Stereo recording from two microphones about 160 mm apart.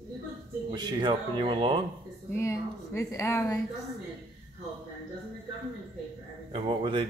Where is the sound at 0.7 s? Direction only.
30° right (ahead or behind).